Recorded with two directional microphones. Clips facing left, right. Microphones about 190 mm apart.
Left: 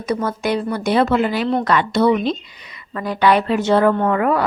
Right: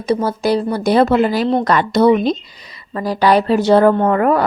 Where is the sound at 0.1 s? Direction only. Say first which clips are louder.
Right 4 dB; 30° right (ahead or behind).